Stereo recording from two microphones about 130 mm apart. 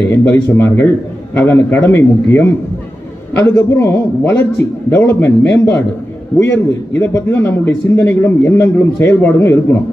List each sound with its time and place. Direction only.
0.1 s speech: 15° left (ahead or behind)